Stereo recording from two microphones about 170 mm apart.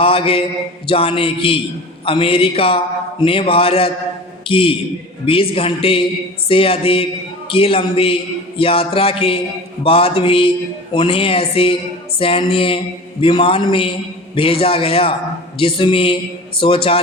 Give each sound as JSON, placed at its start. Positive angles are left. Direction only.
{"t": 0.0, "sound": "a man's voice", "side_deg": 35}